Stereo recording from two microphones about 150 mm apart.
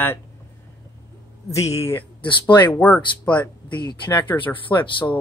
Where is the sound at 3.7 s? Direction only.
30° left (ahead or behind).